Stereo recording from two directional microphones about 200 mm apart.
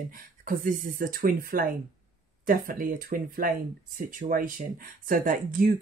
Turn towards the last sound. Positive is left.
turn(degrees=-45)  # may be behind; listen again after turning